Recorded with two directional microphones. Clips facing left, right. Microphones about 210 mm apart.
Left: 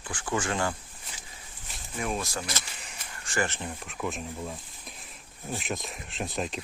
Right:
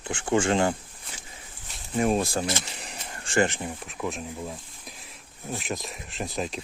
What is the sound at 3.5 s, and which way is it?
Speech, 10° right (ahead or behind).